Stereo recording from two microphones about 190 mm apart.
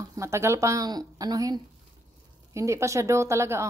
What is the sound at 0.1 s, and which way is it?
A woman's voice, 15° right (ahead or behind).